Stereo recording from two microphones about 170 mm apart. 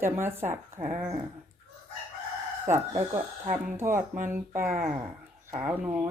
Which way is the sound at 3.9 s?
50° right (ahead or behind).